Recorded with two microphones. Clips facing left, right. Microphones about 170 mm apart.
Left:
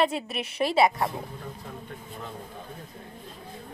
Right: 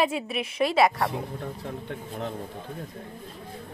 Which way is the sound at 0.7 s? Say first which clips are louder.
Even; 25° left (ahead or behind).